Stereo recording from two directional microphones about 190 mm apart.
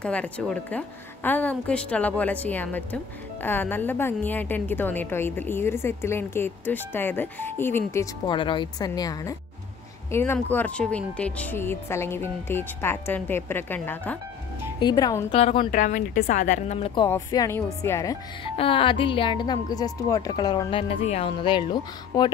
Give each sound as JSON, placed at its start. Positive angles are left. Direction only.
{"t": 0.0, "sound": "a woman's voice", "side_deg": 5}
{"t": 14.8, "sound": "speech", "side_deg": 20}
{"t": 15.3, "sound": "speech", "side_deg": 30}
{"t": 15.7, "sound": "speech", "side_deg": 45}
{"t": 17.1, "sound": "a woman's voice", "side_deg": 15}
{"t": 18.4, "sound": "speech", "side_deg": 30}